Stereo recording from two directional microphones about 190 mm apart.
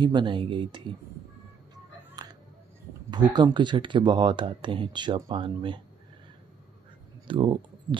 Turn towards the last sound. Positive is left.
turn(degrees=-25)  # may be behind; listen again after turning